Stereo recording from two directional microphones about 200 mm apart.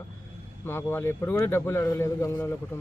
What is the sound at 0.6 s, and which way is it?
A man's voice, 10° left (ahead or behind).